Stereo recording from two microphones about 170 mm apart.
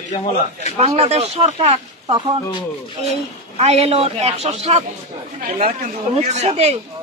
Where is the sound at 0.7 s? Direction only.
35° right (ahead or behind).